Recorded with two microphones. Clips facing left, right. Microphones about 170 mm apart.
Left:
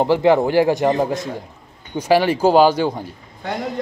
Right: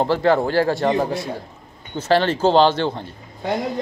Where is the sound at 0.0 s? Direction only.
15° left (ahead or behind).